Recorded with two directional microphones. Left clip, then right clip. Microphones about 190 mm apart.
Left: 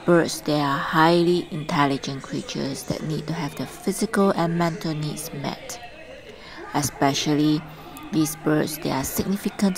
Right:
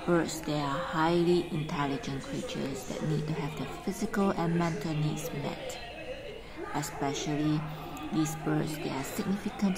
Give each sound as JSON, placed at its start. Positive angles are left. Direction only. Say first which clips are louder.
{"t": 0.1, "sound": "a woman's voice", "louder": "left 10 dB", "side_deg": 30}
{"t": 6.7, "sound": "speech", "louder": "left 11 dB", "side_deg": 30}